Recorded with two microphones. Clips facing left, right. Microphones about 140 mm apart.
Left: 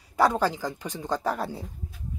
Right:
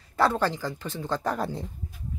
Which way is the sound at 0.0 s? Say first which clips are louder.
Left 1 dB; 15° left (ahead or behind).